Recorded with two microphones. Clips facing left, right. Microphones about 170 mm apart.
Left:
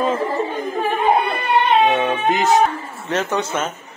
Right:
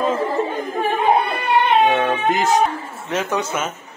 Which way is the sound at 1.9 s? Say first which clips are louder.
Even; centre (ahead or behind).